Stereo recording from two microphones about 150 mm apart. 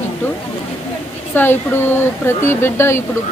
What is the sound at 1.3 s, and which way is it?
Speech, 15° left (ahead or behind).